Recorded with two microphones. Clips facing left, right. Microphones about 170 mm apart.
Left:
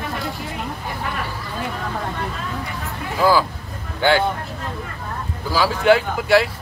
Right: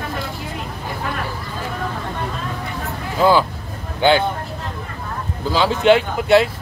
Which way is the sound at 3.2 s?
20° right (ahead or behind).